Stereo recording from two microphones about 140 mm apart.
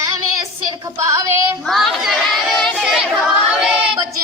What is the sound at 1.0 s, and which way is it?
Female singing, 25° right (ahead or behind).